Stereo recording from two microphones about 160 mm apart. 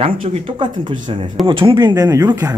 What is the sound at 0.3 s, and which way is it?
Speech, 30° right (ahead or behind).